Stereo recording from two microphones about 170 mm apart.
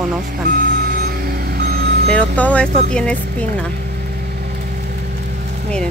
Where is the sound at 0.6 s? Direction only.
55° right (ahead or behind).